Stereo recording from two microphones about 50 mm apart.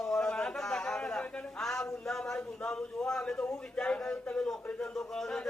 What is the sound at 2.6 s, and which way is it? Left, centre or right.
Speech, centre.